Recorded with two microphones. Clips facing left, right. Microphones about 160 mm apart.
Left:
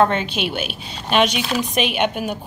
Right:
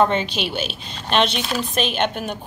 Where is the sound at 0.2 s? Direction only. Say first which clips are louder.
Left 1 dB; 55° left (ahead or behind).